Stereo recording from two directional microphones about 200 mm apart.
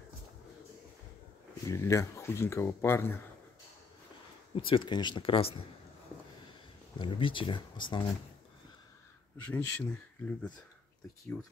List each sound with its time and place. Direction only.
1.7 s speech: 15° left (ahead or behind)
4.6 s speech: 25° left (ahead or behind)
7.0 s speech: 25° left (ahead or behind)
9.5 s speech: 10° left (ahead or behind)